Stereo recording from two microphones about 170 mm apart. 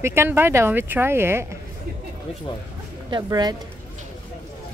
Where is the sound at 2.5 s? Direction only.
30° left (ahead or behind).